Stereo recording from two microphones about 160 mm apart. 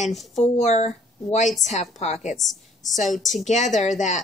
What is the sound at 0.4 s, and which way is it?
A woman's voice, 45° left (ahead or behind).